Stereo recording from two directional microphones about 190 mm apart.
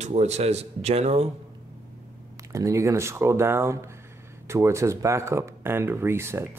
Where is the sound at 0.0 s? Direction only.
35° right (ahead or behind).